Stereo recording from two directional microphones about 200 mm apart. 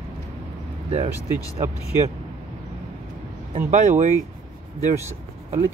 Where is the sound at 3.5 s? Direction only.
35° right (ahead or behind).